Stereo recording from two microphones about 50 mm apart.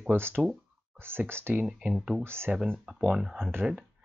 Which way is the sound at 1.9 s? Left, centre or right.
Centre.